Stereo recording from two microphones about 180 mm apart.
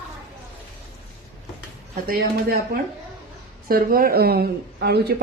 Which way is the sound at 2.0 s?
55° right (ahead or behind).